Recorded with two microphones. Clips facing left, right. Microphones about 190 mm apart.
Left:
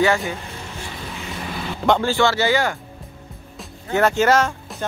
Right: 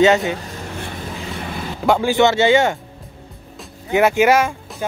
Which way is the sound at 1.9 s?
15° right (ahead or behind).